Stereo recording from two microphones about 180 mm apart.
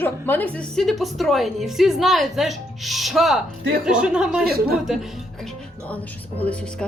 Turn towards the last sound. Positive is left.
turn(degrees=5)  # may be behind; listen again after turning